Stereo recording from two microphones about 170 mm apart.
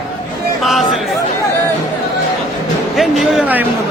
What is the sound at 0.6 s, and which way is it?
Speech, centre (ahead or behind).